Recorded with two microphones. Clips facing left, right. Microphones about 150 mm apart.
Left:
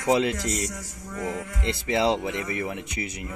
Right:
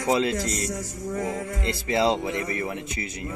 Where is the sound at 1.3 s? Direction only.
40° right (ahead or behind).